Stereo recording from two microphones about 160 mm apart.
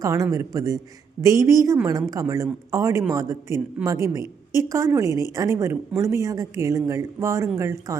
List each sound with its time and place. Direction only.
0.0 s speech: 20° right (ahead or behind)